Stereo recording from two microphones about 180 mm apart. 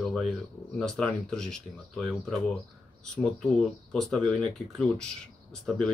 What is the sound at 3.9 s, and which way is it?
Speech, 5° left (ahead or behind).